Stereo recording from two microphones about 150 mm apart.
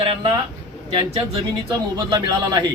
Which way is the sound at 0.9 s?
30° right (ahead or behind).